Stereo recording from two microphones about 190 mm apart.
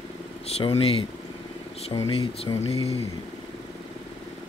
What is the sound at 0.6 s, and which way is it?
Speech, 30° left (ahead or behind).